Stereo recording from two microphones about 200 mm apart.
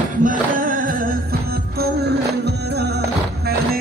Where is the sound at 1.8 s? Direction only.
55° right (ahead or behind).